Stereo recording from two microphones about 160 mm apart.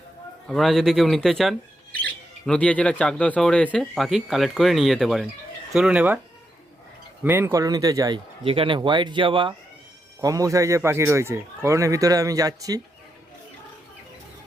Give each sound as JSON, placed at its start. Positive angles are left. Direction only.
{"t": 0.4, "sound": "speech", "side_deg": 0}
{"t": 7.3, "sound": "speech", "side_deg": -15}
{"t": 8.4, "sound": "speech", "side_deg": -35}
{"t": 10.2, "sound": "speech", "side_deg": -20}